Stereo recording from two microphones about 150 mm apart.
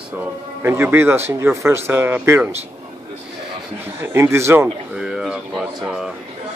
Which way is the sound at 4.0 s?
15° right (ahead or behind).